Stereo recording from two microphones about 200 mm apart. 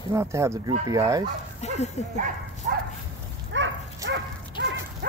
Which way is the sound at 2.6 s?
50° right (ahead or behind).